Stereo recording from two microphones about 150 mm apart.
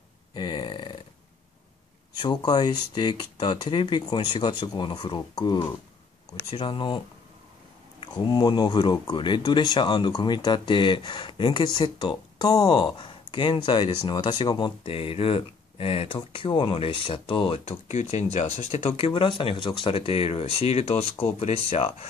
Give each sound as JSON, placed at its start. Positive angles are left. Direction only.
{"t": 0.3, "sound": "a sound", "side_deg": 30}
{"t": 2.1, "sound": "speech", "side_deg": 30}
{"t": 8.0, "sound": "speech", "side_deg": 30}